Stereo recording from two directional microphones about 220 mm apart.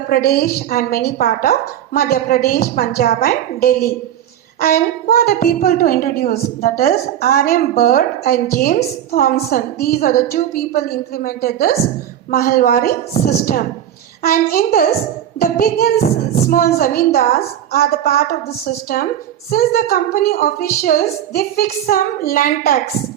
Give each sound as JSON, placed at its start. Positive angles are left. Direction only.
{"t": 0.1, "sound": "a woman's voice", "side_deg": 40}